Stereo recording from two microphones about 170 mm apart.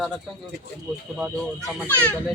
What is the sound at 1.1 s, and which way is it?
Speech, centre (ahead or behind).